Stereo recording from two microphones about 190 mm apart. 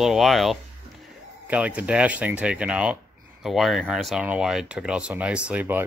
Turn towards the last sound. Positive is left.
turn(degrees=-10)  # may be behind; listen again after turning